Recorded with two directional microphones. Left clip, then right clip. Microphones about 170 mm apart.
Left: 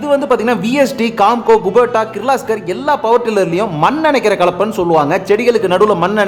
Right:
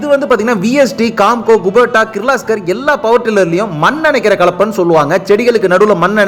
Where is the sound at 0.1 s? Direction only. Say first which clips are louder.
Right 2 dB; 15° right (ahead or behind).